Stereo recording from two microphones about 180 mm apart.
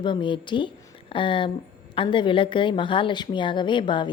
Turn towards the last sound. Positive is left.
turn(degrees=25)  # may be behind; listen again after turning